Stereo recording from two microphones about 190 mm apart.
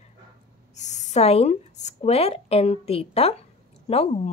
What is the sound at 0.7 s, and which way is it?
Speech, 40° left (ahead or behind).